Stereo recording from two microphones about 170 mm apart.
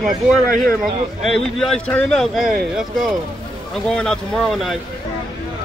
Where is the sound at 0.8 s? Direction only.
Centre (ahead or behind).